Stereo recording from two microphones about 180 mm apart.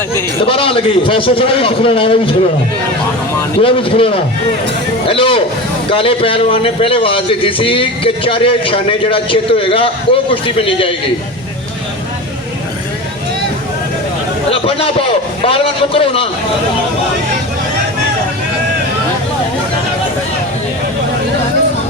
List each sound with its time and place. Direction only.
0.4 s a man's voice: 30° left (ahead or behind)
3.6 s a man's voice: 30° left (ahead or behind)
14.5 s a man's voice: 30° left (ahead or behind)